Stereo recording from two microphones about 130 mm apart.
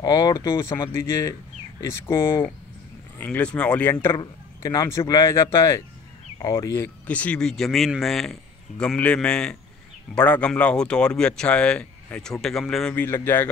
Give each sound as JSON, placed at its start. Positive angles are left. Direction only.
{"t": 0.0, "sound": "speech", "side_deg": 25}
{"t": 4.2, "sound": "speech", "side_deg": 25}